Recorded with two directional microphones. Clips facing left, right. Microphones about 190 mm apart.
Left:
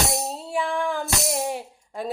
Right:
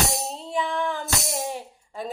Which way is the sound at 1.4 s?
10° left (ahead or behind).